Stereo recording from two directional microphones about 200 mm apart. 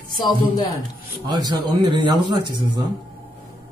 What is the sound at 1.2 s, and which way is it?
Speech, 20° right (ahead or behind).